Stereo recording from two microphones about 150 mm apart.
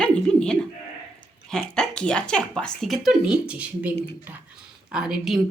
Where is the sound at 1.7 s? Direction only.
5° left (ahead or behind).